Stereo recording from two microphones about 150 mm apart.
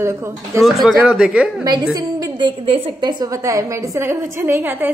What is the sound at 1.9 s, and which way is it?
A woman's voice, 30° right (ahead or behind).